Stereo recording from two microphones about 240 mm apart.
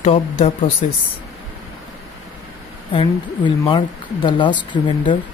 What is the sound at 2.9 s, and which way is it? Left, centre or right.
Speech, centre.